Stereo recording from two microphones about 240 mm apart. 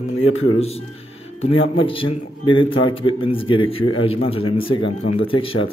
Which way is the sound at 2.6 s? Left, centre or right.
Left.